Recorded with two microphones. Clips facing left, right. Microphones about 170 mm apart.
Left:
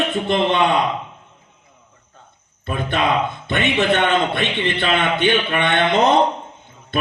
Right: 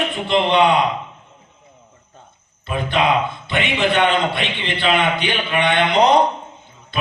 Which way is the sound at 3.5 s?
50° left (ahead or behind).